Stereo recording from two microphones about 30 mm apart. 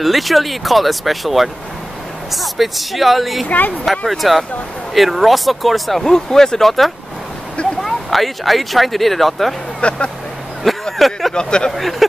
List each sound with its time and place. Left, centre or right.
0.0 s speech: centre
3.4 s speech: left
4.2 s speech: centre
6.1 s speech: centre
7.8 s speech: centre
9.8 s vehicle: left
10.6 s vehicle: centre
11.3 s speech: left
11.7 s speech: centre